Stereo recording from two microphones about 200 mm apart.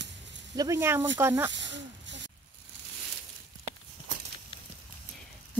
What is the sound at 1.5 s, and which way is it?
Snake, 65° right (ahead or behind).